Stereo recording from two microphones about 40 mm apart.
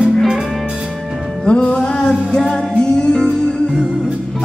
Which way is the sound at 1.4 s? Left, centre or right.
Left.